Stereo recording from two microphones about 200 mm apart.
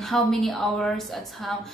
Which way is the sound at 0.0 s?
Centre (ahead or behind).